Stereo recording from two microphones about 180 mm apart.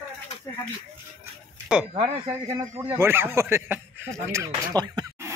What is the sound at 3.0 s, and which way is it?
A man's voice, 15° right (ahead or behind).